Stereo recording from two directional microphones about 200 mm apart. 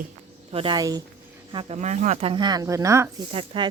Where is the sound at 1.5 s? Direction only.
35° right (ahead or behind).